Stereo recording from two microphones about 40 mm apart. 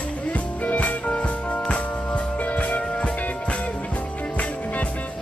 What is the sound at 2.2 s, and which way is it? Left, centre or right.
Music, left.